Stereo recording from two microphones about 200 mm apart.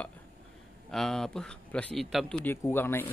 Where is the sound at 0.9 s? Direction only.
5° left (ahead or behind).